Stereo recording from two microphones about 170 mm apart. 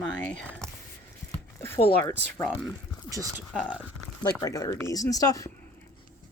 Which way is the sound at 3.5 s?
5° right (ahead or behind).